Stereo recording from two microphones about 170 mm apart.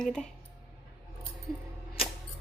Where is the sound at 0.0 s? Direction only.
5° left (ahead or behind).